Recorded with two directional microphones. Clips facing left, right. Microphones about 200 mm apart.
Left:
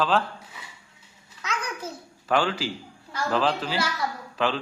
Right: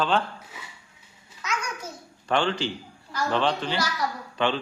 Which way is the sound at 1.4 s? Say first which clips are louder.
Even; 35° left (ahead or behind).